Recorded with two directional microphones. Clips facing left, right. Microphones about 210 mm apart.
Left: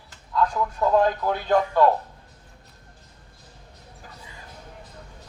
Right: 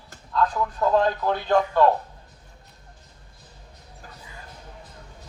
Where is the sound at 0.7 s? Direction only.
5° left (ahead or behind).